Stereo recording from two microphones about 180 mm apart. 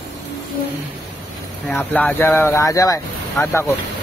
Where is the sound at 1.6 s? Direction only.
5° left (ahead or behind).